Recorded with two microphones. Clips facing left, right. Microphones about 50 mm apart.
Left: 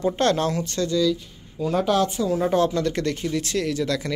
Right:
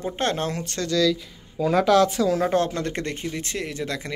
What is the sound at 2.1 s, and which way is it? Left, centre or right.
Speech, right.